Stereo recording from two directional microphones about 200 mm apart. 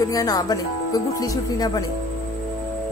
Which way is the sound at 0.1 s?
20° left (ahead or behind).